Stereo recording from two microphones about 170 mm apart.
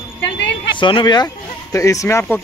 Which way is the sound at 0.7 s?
30° left (ahead or behind).